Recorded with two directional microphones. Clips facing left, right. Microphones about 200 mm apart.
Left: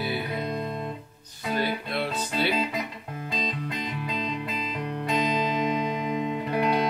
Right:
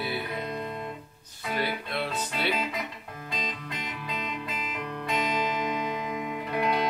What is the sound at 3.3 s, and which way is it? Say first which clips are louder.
Music: left 5 dB; 30° left (ahead or behind).